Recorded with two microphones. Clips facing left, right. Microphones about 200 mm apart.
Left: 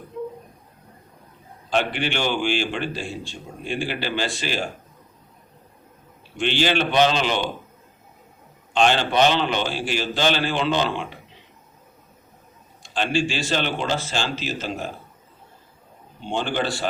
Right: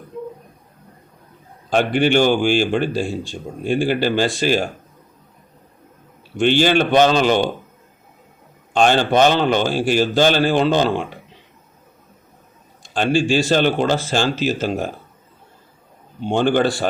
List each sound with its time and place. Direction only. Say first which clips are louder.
1.7 s a man's voice: right 8 dB; 45° right (ahead or behind)
6.4 s a man's voice: right 6 dB; 45° right (ahead or behind)
8.7 s a man's voice: right 4 dB; 45° right (ahead or behind)
12.8 s a man's voice: right 5 dB; 45° right (ahead or behind)
16.2 s a man's voice: right 8 dB; 50° right (ahead or behind)